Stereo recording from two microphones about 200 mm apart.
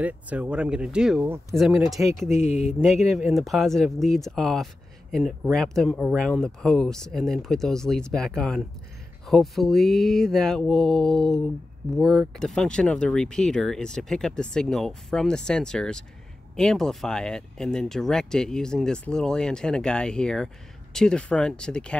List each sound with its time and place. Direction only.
0.0 s speech: 5° right (ahead or behind)
2.2 s speech: 35° left (ahead or behind)
3.1 s speech: centre (ahead or behind)